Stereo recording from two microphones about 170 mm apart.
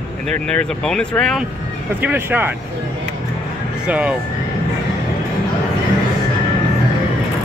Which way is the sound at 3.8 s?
5° right (ahead or behind).